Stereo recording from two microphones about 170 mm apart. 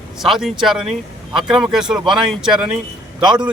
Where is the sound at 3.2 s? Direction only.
25° right (ahead or behind).